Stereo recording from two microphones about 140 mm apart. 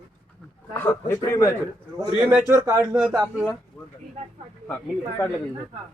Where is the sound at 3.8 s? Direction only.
5° left (ahead or behind).